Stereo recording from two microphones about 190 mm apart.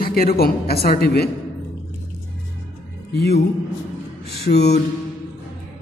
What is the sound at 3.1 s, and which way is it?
Music, 60° left (ahead or behind).